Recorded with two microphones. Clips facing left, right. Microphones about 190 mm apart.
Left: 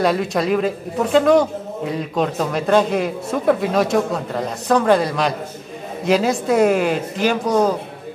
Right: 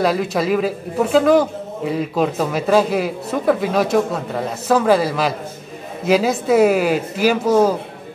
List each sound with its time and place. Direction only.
0.0 s a man's voice: centre (ahead or behind)